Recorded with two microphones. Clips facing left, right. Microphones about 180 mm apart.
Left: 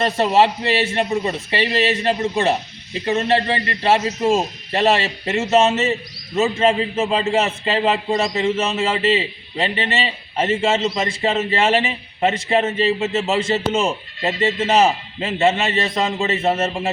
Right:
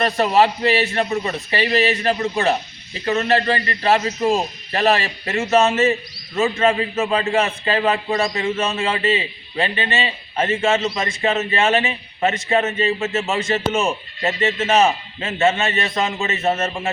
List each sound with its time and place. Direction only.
0.0 s a man's voice: 25° left (ahead or behind)
16.6 s a man's voice: 20° left (ahead or behind)